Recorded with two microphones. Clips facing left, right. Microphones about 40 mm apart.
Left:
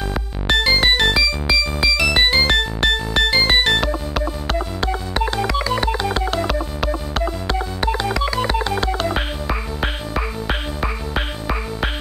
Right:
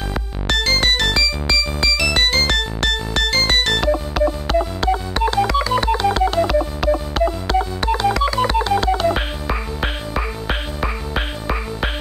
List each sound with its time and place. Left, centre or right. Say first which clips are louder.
0.5 s music: left 2 dB; centre
6.4 s telephone dialing: right 4 dB; centre
6.9 s music: right 5 dB; centre
8.0 s telephone dialing: right 3 dB; centre